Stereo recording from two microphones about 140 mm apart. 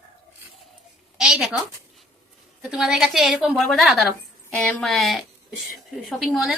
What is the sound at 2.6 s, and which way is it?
A woman's voice, 5° right (ahead or behind).